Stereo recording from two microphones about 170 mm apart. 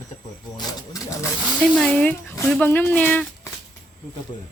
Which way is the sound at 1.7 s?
5° left (ahead or behind).